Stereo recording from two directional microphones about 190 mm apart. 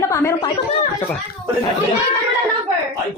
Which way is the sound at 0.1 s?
15° left (ahead or behind).